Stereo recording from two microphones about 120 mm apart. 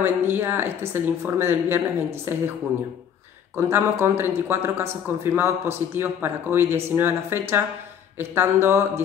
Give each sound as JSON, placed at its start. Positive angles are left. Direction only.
{"t": 0.0, "sound": "a man's voice", "side_deg": -20}
{"t": 3.5, "sound": "a man's voice", "side_deg": -20}